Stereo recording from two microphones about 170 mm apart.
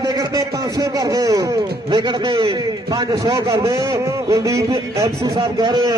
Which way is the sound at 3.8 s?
15° right (ahead or behind).